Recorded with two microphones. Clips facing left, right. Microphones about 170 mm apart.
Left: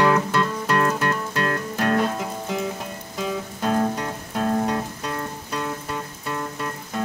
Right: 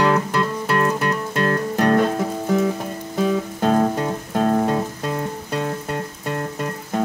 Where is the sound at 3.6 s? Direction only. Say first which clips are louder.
Right 3 dB; 45° right (ahead or behind).